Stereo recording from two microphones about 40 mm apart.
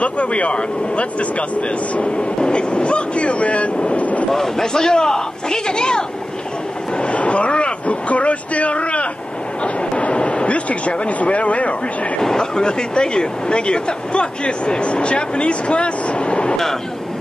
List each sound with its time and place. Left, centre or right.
0.0 s speech: left
4.3 s speech: centre
7.0 s speech: left
12.2 s speech: centre